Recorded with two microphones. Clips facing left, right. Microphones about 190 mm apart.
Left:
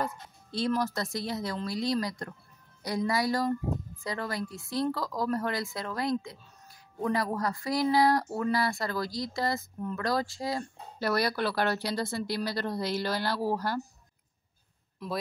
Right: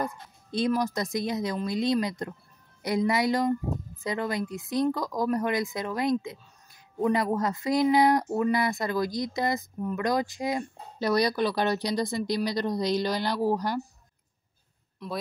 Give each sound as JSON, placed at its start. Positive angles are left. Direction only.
{"t": 0.0, "sound": "a woman's voice", "side_deg": -15}
{"t": 15.0, "sound": "speech", "side_deg": 0}